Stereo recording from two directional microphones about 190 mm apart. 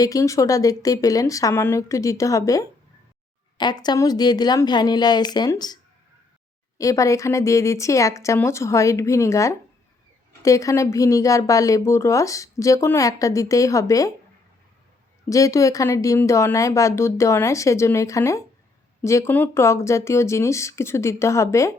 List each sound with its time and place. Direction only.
0.0 s a woman's voice: 15° left (ahead or behind)
15.3 s a woman's voice: 15° left (ahead or behind)